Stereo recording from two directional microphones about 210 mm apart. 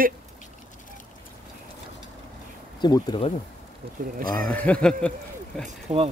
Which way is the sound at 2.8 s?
20° left (ahead or behind).